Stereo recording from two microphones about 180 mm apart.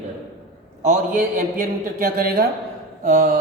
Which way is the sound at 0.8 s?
45° right (ahead or behind).